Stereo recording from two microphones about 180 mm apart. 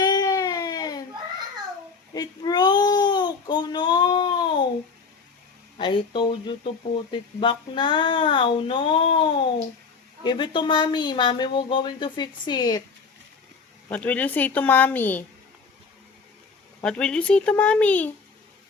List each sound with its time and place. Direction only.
0.0 s a sound: 20° left (ahead or behind)
2.1 s baby cry: 20° left (ahead or behind)
5.7 s speech: 25° left (ahead or behind)
13.9 s speech: 10° left (ahead or behind)
16.8 s speech: 5° left (ahead or behind)